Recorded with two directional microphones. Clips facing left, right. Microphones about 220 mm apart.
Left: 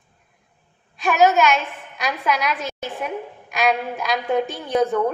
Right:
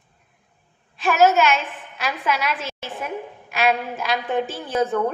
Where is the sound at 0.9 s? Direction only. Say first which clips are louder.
Even; centre (ahead or behind).